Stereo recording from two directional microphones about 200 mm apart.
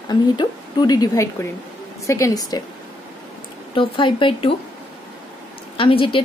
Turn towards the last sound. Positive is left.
turn(degrees=25)  # may be behind; listen again after turning